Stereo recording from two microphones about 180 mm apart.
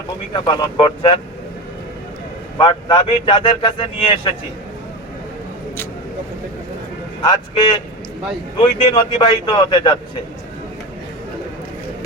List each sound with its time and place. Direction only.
0.3 s speech: 25° left (ahead or behind)
2.6 s speech: 25° left (ahead or behind)
7.2 s speech: 25° left (ahead or behind)